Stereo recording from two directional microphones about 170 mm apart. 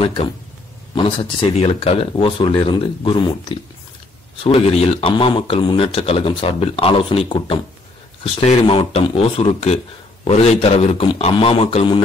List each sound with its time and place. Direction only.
0.0 s a man's voice: 35° left (ahead or behind)